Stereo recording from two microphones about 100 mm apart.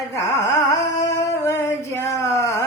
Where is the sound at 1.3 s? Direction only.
25° left (ahead or behind).